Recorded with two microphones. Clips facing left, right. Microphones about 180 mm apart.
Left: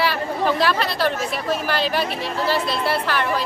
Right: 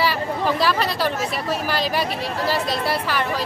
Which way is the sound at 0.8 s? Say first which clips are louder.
Left 1 dB; 40° right (ahead or behind).